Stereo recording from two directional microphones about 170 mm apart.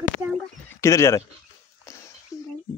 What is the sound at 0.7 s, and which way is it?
Speech, 15° left (ahead or behind).